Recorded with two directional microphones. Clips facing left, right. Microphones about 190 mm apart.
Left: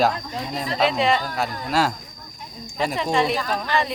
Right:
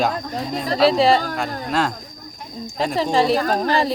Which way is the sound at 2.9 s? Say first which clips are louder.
Right 5 dB; 35° right (ahead or behind).